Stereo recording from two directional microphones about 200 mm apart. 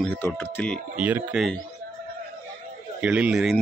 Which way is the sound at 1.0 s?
5° right (ahead or behind).